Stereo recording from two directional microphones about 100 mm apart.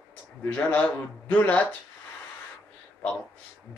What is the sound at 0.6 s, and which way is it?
Speech, 15° left (ahead or behind).